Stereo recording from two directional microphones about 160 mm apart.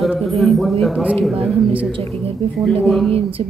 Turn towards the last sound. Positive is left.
turn(degrees=0)  # may be behind; listen again after turning